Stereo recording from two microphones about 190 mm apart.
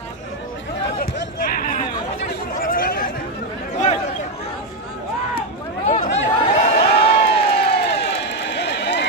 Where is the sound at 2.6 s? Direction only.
50° left (ahead or behind).